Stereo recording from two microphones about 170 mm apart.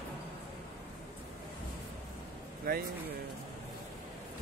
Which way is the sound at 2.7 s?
60° right (ahead or behind).